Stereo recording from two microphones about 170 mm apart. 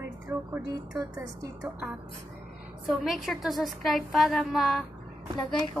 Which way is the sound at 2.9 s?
Centre (ahead or behind).